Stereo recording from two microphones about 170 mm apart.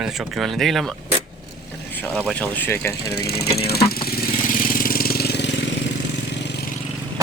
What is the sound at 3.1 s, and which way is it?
Speech, 70° left (ahead or behind).